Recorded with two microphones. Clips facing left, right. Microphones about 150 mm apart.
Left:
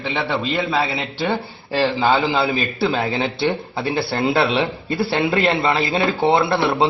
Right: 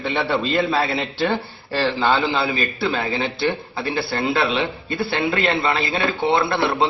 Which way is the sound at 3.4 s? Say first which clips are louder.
Left 2 dB; 25° left (ahead or behind).